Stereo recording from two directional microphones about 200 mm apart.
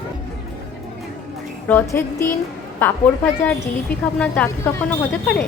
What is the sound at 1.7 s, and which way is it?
A woman's voice, 10° left (ahead or behind).